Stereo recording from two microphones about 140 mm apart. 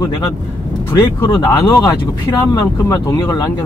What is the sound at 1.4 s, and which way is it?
Speech, 20° left (ahead or behind).